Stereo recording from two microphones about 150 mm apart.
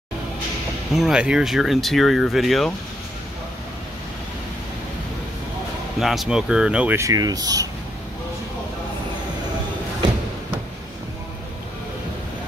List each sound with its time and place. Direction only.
0.9 s speech: 5° right (ahead or behind)
5.9 s speech: centre (ahead or behind)
7.0 s speech: 25° right (ahead or behind)